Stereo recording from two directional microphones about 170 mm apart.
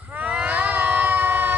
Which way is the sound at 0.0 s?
10° right (ahead or behind).